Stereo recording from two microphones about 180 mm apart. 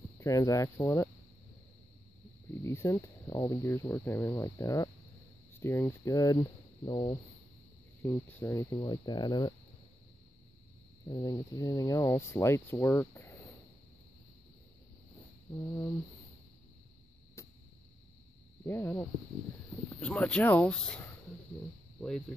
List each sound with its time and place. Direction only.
0.2 s speech: 15° left (ahead or behind)
2.6 s speech: 15° left (ahead or behind)
8.0 s speech: 10° left (ahead or behind)
11.1 s speech: 20° left (ahead or behind)
15.5 s speech: 25° left (ahead or behind)
17.4 s a sound: 15° left (ahead or behind)
18.7 s speech: 15° left (ahead or behind)